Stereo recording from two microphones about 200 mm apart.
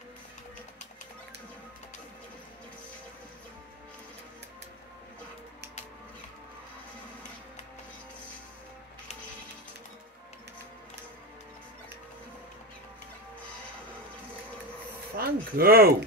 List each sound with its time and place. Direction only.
15.1 s speech: 50° right (ahead or behind)